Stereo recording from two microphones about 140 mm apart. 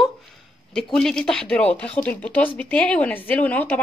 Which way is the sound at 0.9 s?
5° left (ahead or behind).